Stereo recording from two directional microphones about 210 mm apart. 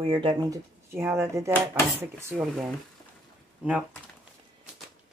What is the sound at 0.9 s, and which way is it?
Speech, 10° right (ahead or behind).